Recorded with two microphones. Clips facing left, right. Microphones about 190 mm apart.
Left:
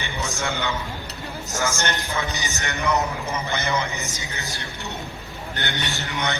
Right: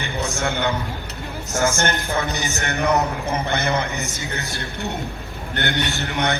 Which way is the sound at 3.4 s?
60° right (ahead or behind).